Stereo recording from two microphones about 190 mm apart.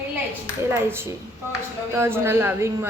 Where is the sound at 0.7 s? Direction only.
10° right (ahead or behind).